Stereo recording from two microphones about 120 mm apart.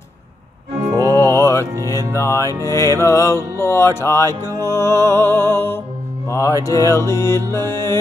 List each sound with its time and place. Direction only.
1.1 s music: 25° left (ahead or behind)